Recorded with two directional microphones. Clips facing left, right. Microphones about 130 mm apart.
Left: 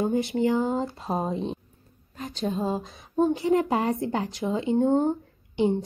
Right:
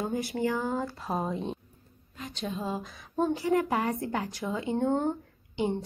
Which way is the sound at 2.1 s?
40° left (ahead or behind).